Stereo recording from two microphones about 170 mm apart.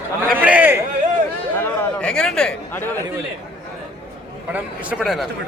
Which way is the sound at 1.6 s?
5° left (ahead or behind).